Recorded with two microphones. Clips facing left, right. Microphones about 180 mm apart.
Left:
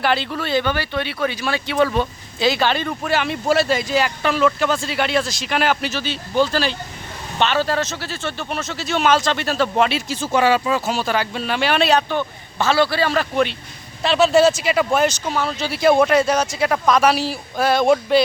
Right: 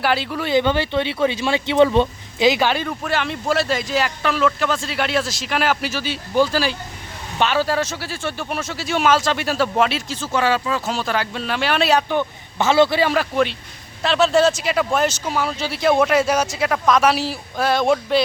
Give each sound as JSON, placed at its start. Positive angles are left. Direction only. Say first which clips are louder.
{"t": 0.0, "sound": "speech", "louder": "even", "side_deg": -5}
{"t": 10.1, "sound": "speech", "louder": "left 3 dB", "side_deg": 15}
{"t": 14.0, "sound": "speech", "louder": "left 2 dB", "side_deg": 5}